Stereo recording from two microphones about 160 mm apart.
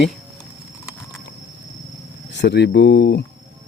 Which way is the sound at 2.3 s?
90° left.